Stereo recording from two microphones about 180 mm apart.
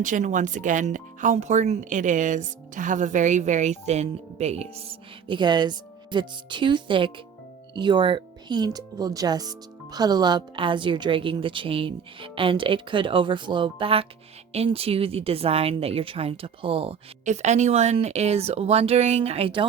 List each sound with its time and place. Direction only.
0.0 s speech: 45° right (ahead or behind)